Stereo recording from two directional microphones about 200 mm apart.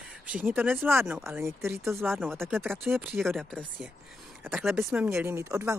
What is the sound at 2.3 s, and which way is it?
Speech, centre (ahead or behind).